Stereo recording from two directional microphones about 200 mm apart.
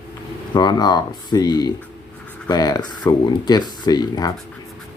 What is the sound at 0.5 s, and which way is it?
Speech, 20° left (ahead or behind).